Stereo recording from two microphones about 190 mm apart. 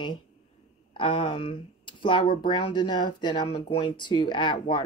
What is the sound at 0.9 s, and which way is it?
Speech, 25° left (ahead or behind).